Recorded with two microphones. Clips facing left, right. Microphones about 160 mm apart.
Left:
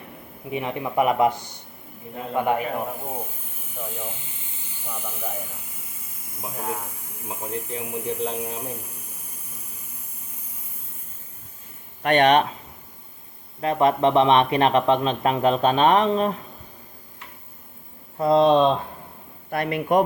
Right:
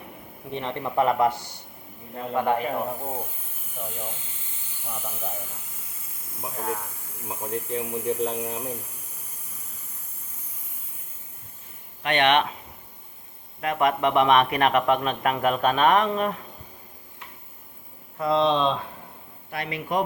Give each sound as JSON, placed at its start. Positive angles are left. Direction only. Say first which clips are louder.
{"t": 0.5, "sound": "a man's voice", "louder": "left 2 dB", "side_deg": 10}
{"t": 3.8, "sound": "speech", "louder": "left 1 dB", "side_deg": 0}
{"t": 6.6, "sound": "a man's voice", "louder": "even", "side_deg": 10}
{"t": 12.0, "sound": "speech", "louder": "left 4 dB", "side_deg": 40}
{"t": 13.6, "sound": "a man's voice", "louder": "left 4 dB", "side_deg": 30}
{"t": 18.2, "sound": "a man's voice", "louder": "left 5 dB", "side_deg": 40}